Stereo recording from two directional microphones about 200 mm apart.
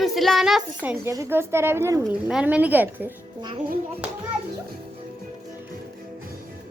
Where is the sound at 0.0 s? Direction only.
Centre (ahead or behind).